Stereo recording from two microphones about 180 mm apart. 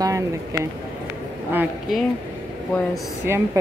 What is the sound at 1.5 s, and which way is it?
Speech, 10° right (ahead or behind).